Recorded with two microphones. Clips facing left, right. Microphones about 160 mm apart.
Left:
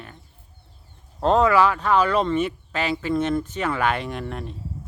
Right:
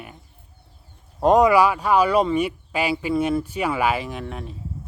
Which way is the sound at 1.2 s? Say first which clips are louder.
Right 2 dB; 15° right (ahead or behind).